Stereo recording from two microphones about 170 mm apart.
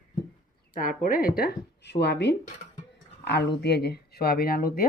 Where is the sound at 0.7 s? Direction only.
55° left (ahead or behind); by 2.3 s 80° left.